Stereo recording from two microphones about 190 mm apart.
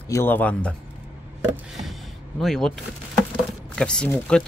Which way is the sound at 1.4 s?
Centre (ahead or behind).